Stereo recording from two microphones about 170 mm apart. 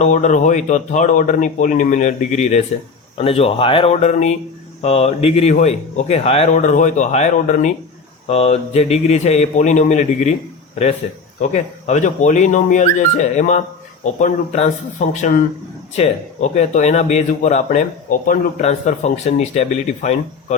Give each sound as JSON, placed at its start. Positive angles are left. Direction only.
{"t": 0.0, "sound": "speech", "side_deg": 45}
{"t": 11.3, "sound": "speech", "side_deg": 45}